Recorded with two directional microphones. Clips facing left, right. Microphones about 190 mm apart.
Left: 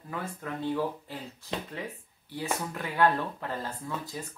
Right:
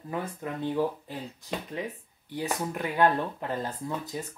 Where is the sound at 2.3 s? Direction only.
20° right (ahead or behind).